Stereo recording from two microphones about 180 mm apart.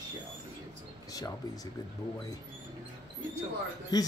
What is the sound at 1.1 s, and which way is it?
Speech, 20° left (ahead or behind).